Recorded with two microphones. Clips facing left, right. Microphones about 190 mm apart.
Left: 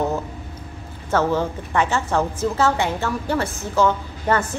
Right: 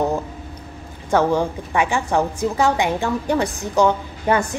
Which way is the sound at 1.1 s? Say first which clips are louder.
Right 2 dB; 15° right (ahead or behind).